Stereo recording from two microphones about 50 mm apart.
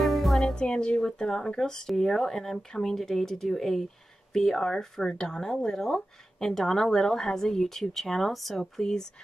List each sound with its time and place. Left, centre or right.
0.0 s music: centre
0.6 s speech: centre